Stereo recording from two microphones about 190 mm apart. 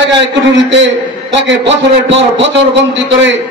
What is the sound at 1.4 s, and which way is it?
Speech, 70° right (ahead or behind).